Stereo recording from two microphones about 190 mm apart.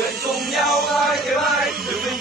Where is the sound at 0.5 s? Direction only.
Centre (ahead or behind).